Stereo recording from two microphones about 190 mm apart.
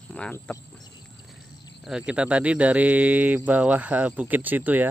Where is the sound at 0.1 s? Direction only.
5° left (ahead or behind).